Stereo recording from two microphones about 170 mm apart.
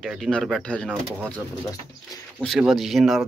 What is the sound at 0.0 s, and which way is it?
Speech, centre (ahead or behind).